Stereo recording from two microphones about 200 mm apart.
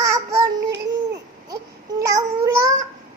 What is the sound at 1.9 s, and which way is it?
Babbling, 15° right (ahead or behind).